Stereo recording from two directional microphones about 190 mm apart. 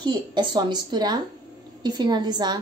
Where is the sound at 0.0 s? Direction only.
25° right (ahead or behind).